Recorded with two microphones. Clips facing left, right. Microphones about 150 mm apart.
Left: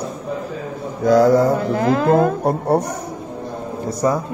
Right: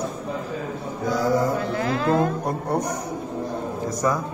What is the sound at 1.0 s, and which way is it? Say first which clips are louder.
Speech: left 11 dB; 90° left.